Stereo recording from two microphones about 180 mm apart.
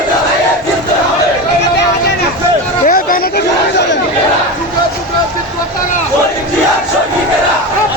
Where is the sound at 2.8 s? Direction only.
55° left (ahead or behind).